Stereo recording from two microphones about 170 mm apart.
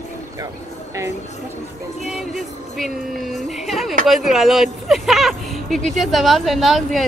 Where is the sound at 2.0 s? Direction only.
Centre (ahead or behind).